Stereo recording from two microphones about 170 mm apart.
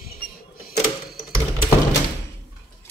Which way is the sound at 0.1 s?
60° left (ahead or behind).